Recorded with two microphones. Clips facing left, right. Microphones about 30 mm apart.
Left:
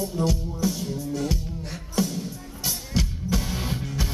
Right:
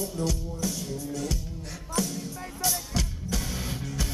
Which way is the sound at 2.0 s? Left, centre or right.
Left.